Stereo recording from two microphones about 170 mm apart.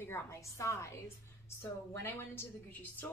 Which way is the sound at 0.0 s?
15° left (ahead or behind).